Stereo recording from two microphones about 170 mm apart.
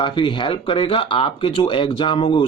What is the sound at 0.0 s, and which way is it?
Speech, 30° left (ahead or behind).